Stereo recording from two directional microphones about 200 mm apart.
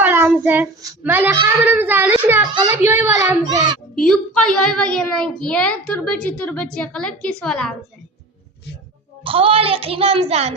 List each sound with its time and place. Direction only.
0.0 s a child's voice: 10° right (ahead or behind)
3.9 s a child's voice: 5° left (ahead or behind)
9.2 s a child's voice: 30° right (ahead or behind)